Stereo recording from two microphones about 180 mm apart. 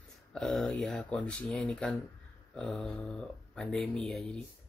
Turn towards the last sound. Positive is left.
turn(degrees=5)  # may be behind; listen again after turning